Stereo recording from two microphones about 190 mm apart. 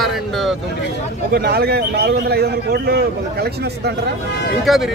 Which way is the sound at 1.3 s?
55° right (ahead or behind).